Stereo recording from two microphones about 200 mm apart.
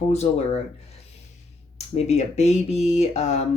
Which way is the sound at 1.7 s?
30° left (ahead or behind).